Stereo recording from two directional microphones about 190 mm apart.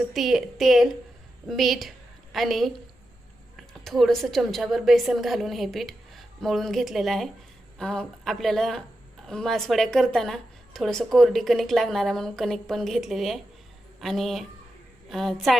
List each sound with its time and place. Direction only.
0.1 s a woman's voice: centre (ahead or behind)
3.8 s a woman's voice: centre (ahead or behind)